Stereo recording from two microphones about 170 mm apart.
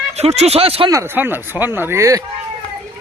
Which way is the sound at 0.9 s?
15° right (ahead or behind).